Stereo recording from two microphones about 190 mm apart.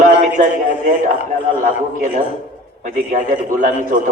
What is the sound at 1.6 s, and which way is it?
A man's voice, 40° right (ahead or behind).